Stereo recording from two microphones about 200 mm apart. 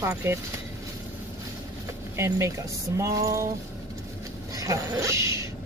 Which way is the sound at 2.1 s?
15° right (ahead or behind).